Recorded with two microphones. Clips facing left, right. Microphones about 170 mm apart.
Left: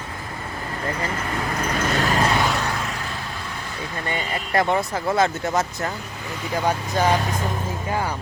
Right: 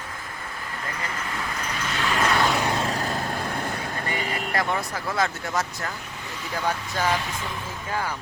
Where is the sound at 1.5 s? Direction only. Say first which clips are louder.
Left 7 dB; 45° left (ahead or behind).